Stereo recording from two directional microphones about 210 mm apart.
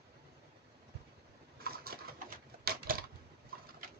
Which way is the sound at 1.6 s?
45° right (ahead or behind).